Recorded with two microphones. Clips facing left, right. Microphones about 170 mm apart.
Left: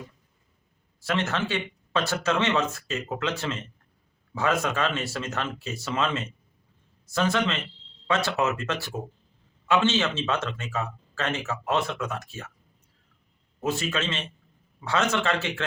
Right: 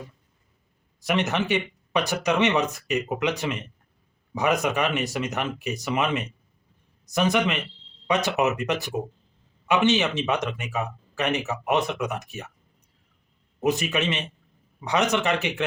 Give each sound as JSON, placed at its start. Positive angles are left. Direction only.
{"t": 1.0, "sound": "speech", "side_deg": -20}
{"t": 13.6, "sound": "speech", "side_deg": -20}